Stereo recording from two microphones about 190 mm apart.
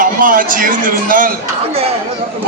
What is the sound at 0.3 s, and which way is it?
Speech, 45° right (ahead or behind).